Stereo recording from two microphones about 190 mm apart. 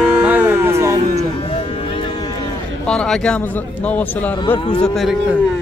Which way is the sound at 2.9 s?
5° left (ahead or behind).